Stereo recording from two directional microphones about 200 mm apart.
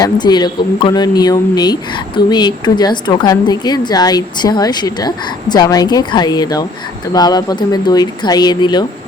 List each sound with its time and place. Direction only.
0.0 s speech: 20° left (ahead or behind)